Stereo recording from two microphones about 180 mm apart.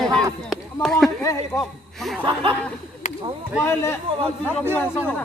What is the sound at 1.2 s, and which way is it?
Speech, 20° left (ahead or behind).